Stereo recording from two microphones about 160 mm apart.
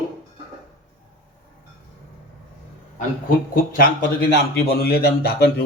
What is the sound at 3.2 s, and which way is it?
Speech, 60° left (ahead or behind).